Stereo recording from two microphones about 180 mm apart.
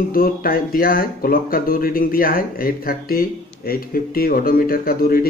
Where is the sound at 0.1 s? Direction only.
55° left (ahead or behind).